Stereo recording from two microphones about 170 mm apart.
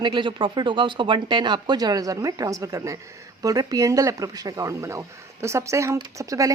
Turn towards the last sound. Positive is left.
turn(degrees=-20)  # may be behind; listen again after turning